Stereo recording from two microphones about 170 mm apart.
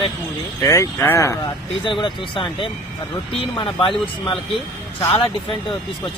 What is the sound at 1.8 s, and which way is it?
Speech, 30° left (ahead or behind).